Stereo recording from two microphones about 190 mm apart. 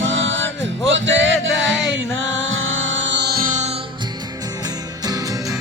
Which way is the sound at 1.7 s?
Centre (ahead or behind).